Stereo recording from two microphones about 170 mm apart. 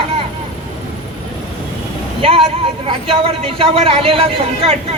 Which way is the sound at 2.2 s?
35° right (ahead or behind).